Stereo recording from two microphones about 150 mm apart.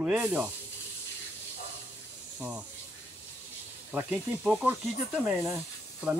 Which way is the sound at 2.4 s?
10° right (ahead or behind).